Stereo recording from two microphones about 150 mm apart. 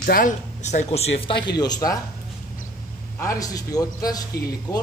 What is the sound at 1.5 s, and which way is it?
Speech, 25° left (ahead or behind).